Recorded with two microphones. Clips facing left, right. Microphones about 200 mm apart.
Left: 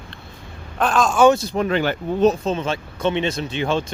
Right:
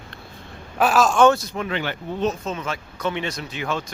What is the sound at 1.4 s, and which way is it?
Speech, 35° left (ahead or behind).